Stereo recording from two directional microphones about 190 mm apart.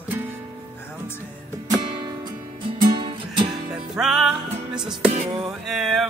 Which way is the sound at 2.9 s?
25° right (ahead or behind).